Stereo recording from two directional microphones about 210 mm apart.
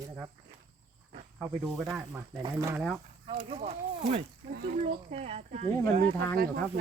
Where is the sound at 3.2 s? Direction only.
30° right (ahead or behind).